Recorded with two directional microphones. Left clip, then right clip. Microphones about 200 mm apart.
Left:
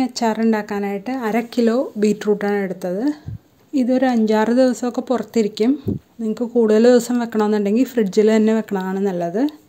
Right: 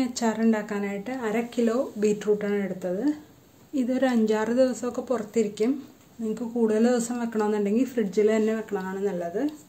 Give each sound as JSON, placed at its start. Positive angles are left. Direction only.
{"t": 0.0, "sound": "speech", "side_deg": 35}
{"t": 3.7, "sound": "a woman's voice", "side_deg": 35}